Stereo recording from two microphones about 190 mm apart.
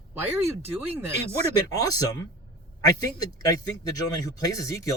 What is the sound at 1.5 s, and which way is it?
Speech, 20° left (ahead or behind).